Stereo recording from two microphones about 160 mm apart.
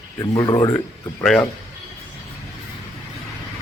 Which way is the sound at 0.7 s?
5° left (ahead or behind).